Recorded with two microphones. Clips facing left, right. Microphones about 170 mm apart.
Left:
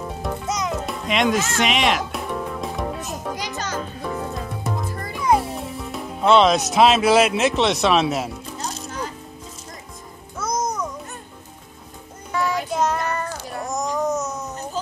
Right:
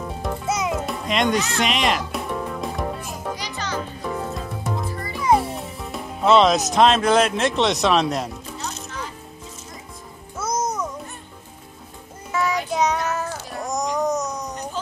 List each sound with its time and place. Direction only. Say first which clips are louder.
0.2 s music: right 2 dB; 5° right (ahead or behind)
3.3 s music: left 1 dB; 45° left (ahead or behind)
4.0 s music: even; centre (ahead or behind)
10.3 s music: even; 5° right (ahead or behind)
12.3 s child singing: even; centre (ahead or behind)